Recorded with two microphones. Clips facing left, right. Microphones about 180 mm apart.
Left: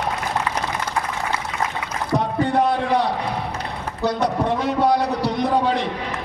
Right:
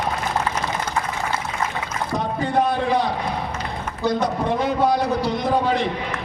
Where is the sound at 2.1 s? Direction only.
70° left (ahead or behind).